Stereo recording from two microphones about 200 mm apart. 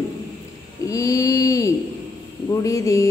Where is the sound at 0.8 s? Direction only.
15° left (ahead or behind).